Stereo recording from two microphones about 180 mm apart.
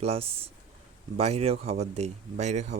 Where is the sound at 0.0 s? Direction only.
35° right (ahead or behind).